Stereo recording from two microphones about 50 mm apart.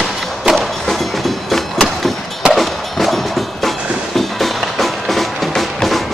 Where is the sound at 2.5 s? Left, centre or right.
Centre.